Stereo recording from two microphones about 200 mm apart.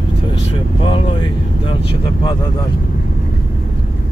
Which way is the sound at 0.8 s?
25° left (ahead or behind).